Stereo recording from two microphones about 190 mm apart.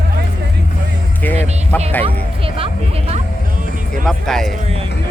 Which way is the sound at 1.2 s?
10° left (ahead or behind).